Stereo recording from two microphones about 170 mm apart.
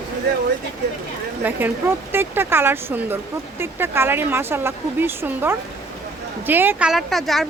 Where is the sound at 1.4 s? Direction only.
10° right (ahead or behind).